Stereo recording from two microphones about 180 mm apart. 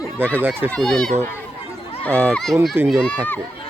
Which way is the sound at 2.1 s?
15° right (ahead or behind).